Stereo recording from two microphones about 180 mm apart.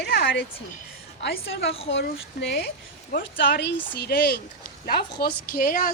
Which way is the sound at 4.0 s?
55° left (ahead or behind).